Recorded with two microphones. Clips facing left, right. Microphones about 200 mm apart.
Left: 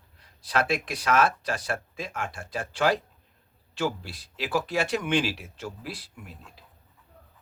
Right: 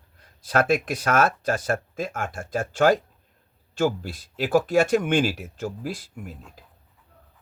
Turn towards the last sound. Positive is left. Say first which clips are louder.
# right 7 dB
turn(degrees=-45)  # may be behind; listen again after turning